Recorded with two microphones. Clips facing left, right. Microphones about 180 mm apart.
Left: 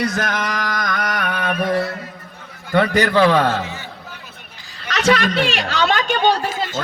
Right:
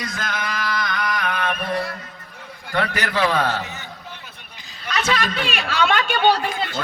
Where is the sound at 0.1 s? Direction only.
50° left (ahead or behind).